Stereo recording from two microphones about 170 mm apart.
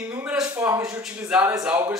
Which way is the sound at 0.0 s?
10° right (ahead or behind).